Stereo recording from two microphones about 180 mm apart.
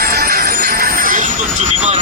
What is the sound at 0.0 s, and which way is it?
Music, 55° right (ahead or behind).